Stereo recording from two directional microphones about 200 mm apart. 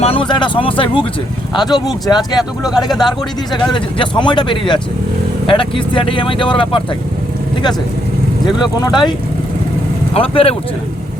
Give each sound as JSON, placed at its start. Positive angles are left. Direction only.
{"t": 0.0, "sound": "speech", "side_deg": 25}
{"t": 2.4, "sound": "speech", "side_deg": 0}
{"t": 3.7, "sound": "speech", "side_deg": 25}
{"t": 8.8, "sound": "speech", "side_deg": 20}
{"t": 10.2, "sound": "speech", "side_deg": 30}